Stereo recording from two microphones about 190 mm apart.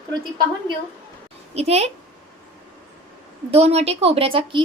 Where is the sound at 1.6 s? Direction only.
35° right (ahead or behind).